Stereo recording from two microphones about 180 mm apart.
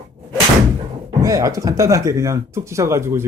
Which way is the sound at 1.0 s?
20° right (ahead or behind).